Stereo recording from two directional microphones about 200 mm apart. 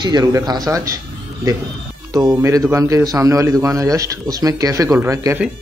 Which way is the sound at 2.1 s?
15° right (ahead or behind).